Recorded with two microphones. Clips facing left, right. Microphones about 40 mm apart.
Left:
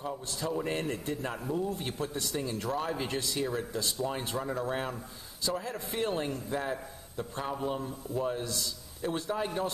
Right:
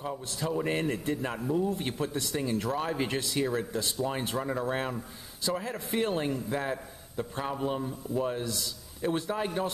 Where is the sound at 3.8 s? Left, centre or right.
Centre.